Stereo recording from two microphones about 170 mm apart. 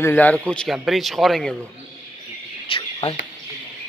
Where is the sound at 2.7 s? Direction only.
35° left (ahead or behind).